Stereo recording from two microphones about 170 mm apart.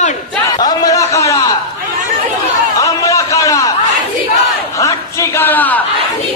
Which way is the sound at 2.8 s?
20° left (ahead or behind).